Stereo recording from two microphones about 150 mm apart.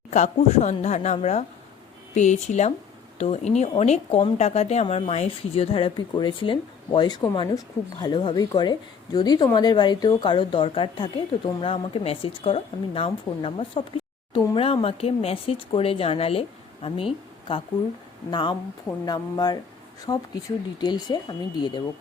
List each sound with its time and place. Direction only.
0.1 s speech: 50° left (ahead or behind)
18.3 s speech: 30° left (ahead or behind)